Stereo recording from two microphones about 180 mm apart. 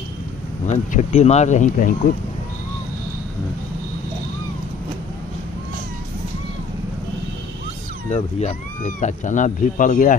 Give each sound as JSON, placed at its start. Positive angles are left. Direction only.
{"t": 0.7, "sound": "speech", "side_deg": 40}
{"t": 8.1, "sound": "speech", "side_deg": 40}